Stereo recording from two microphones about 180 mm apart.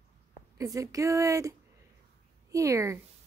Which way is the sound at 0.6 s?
20° right (ahead or behind).